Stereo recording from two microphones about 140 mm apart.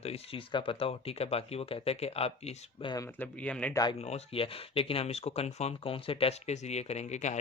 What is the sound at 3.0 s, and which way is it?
Speech, 15° left (ahead or behind).